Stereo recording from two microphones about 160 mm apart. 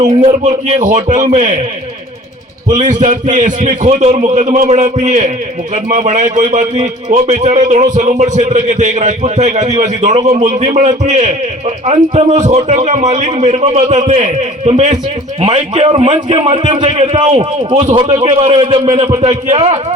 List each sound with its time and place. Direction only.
0.2 s a man's voice: 45° right (ahead or behind)
2.6 s a man's voice: 50° right (ahead or behind)